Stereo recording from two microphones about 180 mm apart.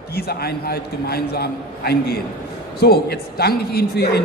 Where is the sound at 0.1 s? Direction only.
60° left (ahead or behind).